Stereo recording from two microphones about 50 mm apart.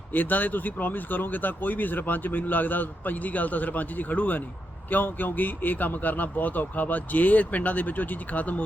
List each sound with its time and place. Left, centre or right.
0.1 s speech: left